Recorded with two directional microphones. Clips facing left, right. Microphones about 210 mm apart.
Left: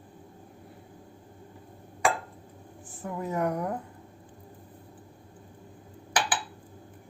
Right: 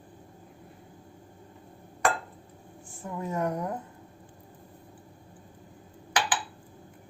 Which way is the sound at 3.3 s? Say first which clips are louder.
Left 1 dB; centre (ahead or behind).